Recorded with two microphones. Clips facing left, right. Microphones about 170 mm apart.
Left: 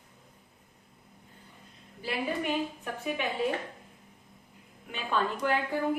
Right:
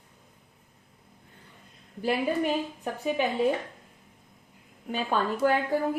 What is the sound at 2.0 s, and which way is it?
A woman's voice, 45° right (ahead or behind).